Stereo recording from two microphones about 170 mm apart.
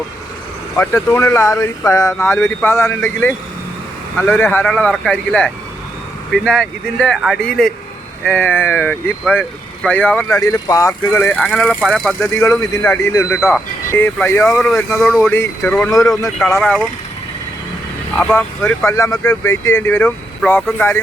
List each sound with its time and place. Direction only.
0.8 s speech: 15° left (ahead or behind)
10.3 s speech: 20° left (ahead or behind)
14.4 s speech: centre (ahead or behind)
15.3 s speech: 10° left (ahead or behind)
15.9 s speech: 20° left (ahead or behind)
16.6 s speech: centre (ahead or behind)
18.2 s speech: 10° left (ahead or behind)